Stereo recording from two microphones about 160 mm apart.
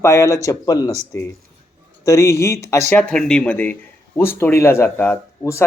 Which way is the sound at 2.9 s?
5° left (ahead or behind).